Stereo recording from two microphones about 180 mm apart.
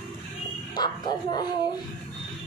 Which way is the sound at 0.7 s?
25° left (ahead or behind).